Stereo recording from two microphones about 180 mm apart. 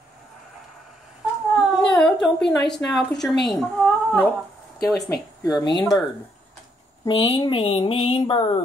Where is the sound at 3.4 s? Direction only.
Centre (ahead or behind).